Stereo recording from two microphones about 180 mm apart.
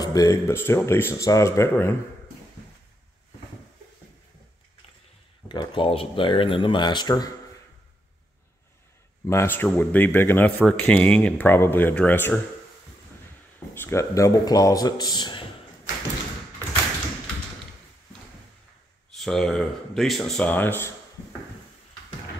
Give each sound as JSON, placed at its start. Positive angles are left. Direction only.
{"t": 0.0, "sound": "speech", "side_deg": 20}
{"t": 5.5, "sound": "speech", "side_deg": 25}
{"t": 9.3, "sound": "speech", "side_deg": 15}
{"t": 13.7, "sound": "speech", "side_deg": 15}
{"t": 19.1, "sound": "speech", "side_deg": 0}